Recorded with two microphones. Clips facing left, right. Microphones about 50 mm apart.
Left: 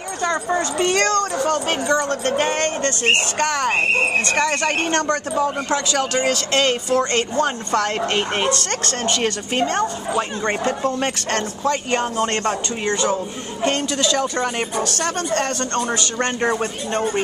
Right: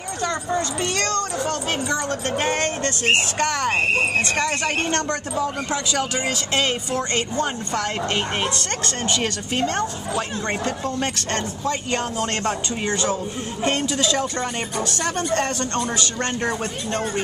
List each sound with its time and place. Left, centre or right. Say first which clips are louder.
0.5 s speech: left 4 dB; left
1.4 s speech: left 4 dB; centre
4.7 s speech: left 3 dB; left
5.7 s speech: left 3 dB; centre
8.1 s speech: left 3 dB; centre
9.7 s speech: left 3 dB; centre
10.4 s speech: left 4 dB; centre
12.8 s speech: left 3 dB; centre
14.8 s speech: right 1 dB; centre
15.8 s speech: left 3 dB; centre